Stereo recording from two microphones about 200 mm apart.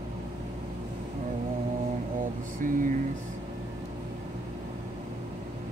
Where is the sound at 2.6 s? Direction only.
40° right (ahead or behind).